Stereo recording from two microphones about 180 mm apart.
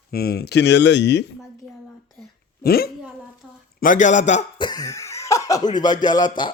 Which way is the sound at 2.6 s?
60° left (ahead or behind).